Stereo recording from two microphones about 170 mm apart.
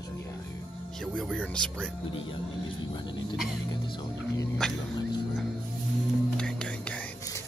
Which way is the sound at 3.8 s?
30° left (ahead or behind).